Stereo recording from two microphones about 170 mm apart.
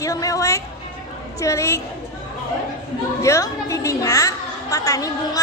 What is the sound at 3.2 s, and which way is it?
A woman's voice, 15° left (ahead or behind).